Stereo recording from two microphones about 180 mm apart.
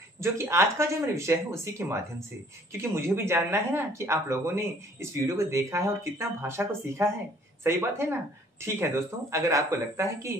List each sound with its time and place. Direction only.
0.2 s speech: 15° right (ahead or behind)